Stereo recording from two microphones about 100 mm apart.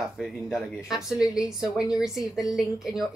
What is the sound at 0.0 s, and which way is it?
Speech, centre (ahead or behind).